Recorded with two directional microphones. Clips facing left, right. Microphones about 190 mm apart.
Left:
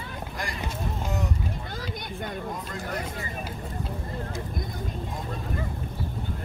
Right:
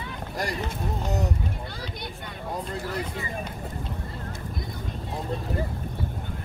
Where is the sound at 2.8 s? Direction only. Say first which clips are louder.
Right 1 dB; 50° left (ahead or behind).